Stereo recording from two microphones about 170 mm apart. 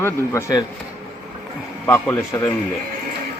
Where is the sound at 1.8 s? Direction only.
10° left (ahead or behind).